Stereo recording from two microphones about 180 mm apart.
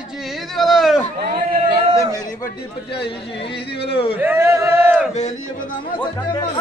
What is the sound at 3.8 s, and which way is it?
Speech, 30° left (ahead or behind).